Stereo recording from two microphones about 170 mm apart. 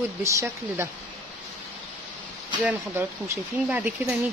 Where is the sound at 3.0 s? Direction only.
15° right (ahead or behind).